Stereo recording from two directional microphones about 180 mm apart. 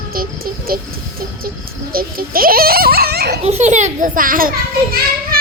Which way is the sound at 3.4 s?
40° right (ahead or behind).